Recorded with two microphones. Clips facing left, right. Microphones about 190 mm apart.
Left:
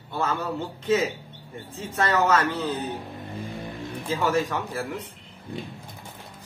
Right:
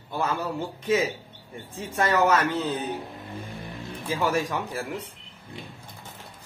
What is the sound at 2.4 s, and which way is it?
Speech, 15° right (ahead or behind).